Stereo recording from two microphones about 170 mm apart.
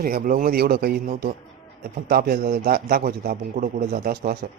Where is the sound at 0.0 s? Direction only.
55° right (ahead or behind).